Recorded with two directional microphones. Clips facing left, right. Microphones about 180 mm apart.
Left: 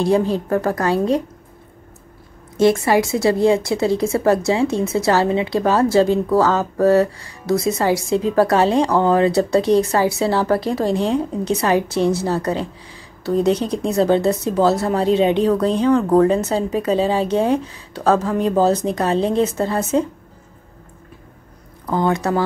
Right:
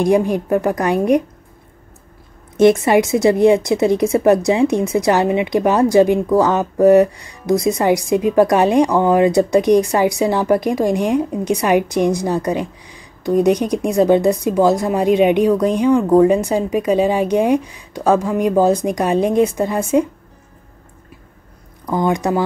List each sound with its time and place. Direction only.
0.0 s a woman's voice: 15° right (ahead or behind)
2.5 s a woman's voice: 20° right (ahead or behind)
21.9 s a woman's voice: 15° right (ahead or behind)